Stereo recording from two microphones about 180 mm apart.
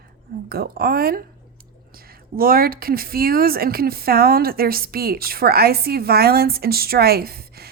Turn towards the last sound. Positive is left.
turn(degrees=-60)  # may be behind; listen again after turning